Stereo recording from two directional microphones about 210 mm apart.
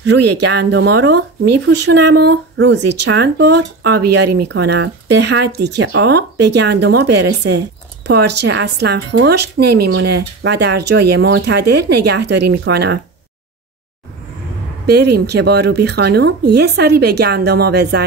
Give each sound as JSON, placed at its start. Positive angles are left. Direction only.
{"t": 0.6, "sound": "speech", "side_deg": -55}
{"t": 14.9, "sound": "speech", "side_deg": -50}